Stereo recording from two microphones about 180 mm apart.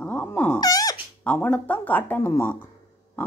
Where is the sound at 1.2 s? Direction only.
5° left (ahead or behind).